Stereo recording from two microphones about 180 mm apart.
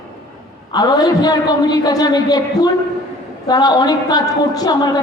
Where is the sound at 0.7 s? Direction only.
20° left (ahead or behind).